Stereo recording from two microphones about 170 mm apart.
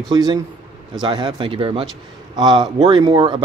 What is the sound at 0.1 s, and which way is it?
Speech, 25° right (ahead or behind).